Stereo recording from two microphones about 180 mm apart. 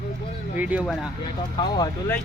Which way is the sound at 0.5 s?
10° right (ahead or behind).